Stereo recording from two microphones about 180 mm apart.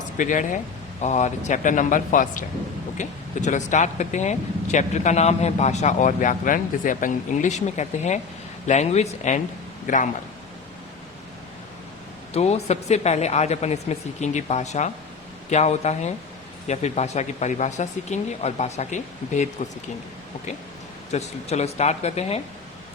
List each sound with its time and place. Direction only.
0.2 s speech: 45° left (ahead or behind)
12.3 s speech: 35° left (ahead or behind)
21.1 s speech: 40° left (ahead or behind)